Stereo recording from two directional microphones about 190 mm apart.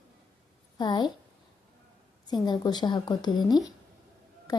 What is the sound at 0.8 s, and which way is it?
Speech, 25° left (ahead or behind).